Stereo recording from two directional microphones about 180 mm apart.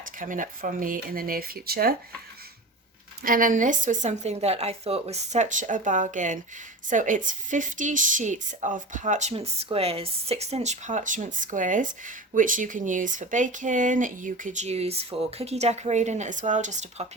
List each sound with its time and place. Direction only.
0.2 s a woman's voice: 50° right (ahead or behind)
3.2 s a woman's voice: 50° right (ahead or behind)